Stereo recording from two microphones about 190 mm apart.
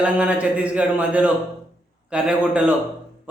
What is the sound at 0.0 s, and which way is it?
A man's voice, 5° right (ahead or behind).